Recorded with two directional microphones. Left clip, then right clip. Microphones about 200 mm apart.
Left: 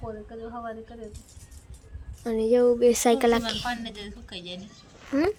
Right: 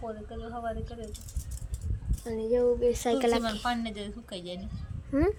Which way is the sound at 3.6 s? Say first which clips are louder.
Even; 60° right (ahead or behind).